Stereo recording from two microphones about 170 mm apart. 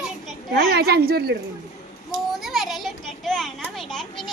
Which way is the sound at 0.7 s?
65° right (ahead or behind).